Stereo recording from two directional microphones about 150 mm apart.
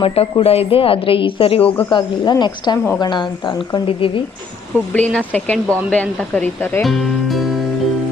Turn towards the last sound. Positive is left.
turn(degrees=10)  # may be behind; listen again after turning